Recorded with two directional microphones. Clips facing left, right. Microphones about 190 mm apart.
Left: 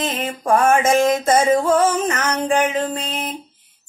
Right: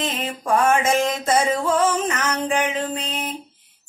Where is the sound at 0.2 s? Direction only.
45° left (ahead or behind).